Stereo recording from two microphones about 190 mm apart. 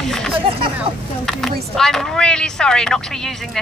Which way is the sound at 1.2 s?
Centre (ahead or behind).